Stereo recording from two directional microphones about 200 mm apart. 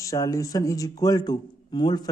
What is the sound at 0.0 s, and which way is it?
A man's voice, 15° left (ahead or behind).